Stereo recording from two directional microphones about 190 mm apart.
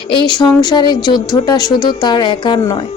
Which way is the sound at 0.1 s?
25° left (ahead or behind).